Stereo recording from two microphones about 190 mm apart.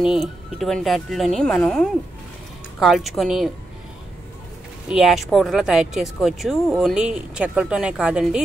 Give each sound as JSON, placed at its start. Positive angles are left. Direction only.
{"t": 0.0, "sound": "speech", "side_deg": 0}
{"t": 4.8, "sound": "speech", "side_deg": 0}